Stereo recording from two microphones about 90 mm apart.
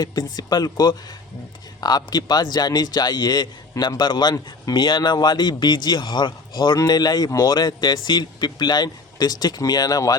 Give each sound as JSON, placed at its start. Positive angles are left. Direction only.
{"t": 0.0, "sound": "a man's voice", "side_deg": 50}